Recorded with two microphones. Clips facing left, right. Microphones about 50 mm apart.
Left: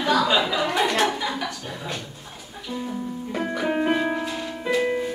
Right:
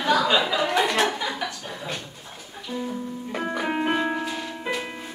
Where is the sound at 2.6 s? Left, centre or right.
Centre.